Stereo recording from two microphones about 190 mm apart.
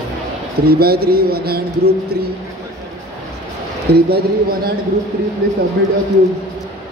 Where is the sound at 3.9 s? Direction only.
55° right (ahead or behind).